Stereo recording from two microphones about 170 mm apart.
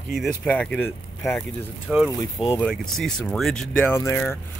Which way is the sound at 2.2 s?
25° left (ahead or behind).